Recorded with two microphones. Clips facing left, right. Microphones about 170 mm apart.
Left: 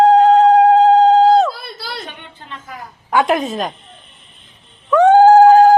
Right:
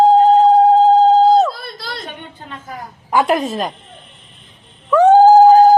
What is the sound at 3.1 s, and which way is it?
Speech, centre (ahead or behind).